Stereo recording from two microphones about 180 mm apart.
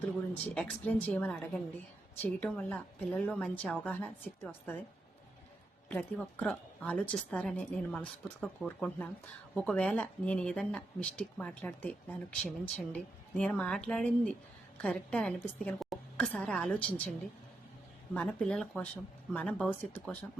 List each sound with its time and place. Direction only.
0.4 s speech: 10° left (ahead or behind)
5.9 s a woman's voice: 10° left (ahead or behind)
18.1 s a woman's voice: 5° left (ahead or behind)